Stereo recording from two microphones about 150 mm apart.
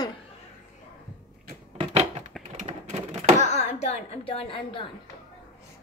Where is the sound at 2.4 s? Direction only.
50° right (ahead or behind).